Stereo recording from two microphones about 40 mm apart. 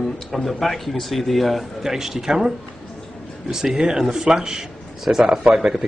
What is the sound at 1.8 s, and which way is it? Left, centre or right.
Speech, centre.